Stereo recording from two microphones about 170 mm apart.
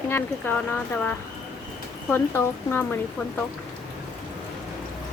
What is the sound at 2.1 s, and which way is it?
Speech, 15° left (ahead or behind).